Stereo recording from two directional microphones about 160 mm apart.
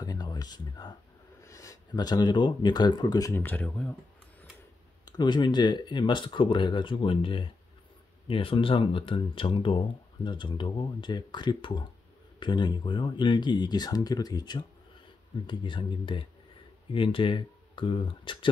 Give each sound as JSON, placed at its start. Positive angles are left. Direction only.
{"t": 0.0, "sound": "a sound", "side_deg": 25}
{"t": 1.4, "sound": "speech", "side_deg": 20}
{"t": 5.1, "sound": "speech", "side_deg": 30}